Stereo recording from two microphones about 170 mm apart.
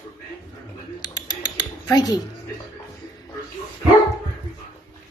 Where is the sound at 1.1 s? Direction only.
25° left (ahead or behind).